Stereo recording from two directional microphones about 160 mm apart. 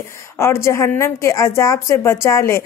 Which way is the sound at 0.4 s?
15° left (ahead or behind).